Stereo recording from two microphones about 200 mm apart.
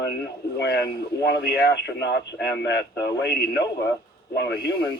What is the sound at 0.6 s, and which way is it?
Speech, 55° left (ahead or behind).